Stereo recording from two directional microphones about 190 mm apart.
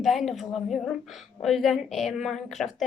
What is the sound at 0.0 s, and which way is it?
A woman's voice, centre (ahead or behind).